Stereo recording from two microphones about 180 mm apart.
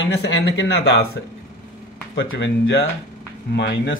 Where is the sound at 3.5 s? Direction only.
75° left (ahead or behind).